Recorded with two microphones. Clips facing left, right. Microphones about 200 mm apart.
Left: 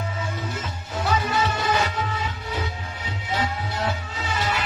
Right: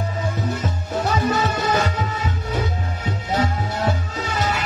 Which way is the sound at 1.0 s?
45° right (ahead or behind).